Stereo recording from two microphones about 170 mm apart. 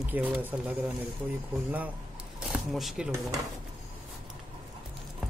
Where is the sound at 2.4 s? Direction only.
Centre (ahead or behind).